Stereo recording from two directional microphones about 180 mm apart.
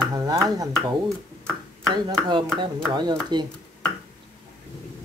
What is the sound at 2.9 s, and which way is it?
Speech, 25° right (ahead or behind).